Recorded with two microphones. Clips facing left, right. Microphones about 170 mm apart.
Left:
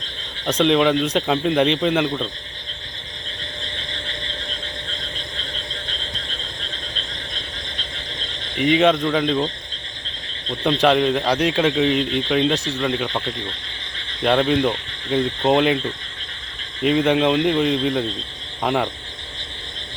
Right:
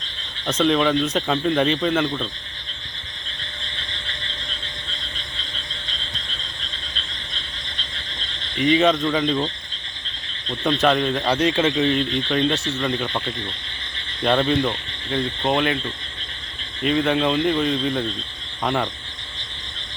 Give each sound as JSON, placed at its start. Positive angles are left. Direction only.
{"t": 0.4, "sound": "speech", "side_deg": 15}
{"t": 8.5, "sound": "speech", "side_deg": 10}
{"t": 10.6, "sound": "speech", "side_deg": 10}
{"t": 16.8, "sound": "speech", "side_deg": 20}